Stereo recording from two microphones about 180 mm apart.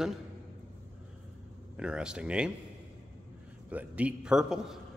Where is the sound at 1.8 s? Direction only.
5° right (ahead or behind).